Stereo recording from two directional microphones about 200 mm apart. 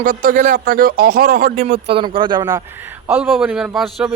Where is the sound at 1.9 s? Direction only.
25° right (ahead or behind).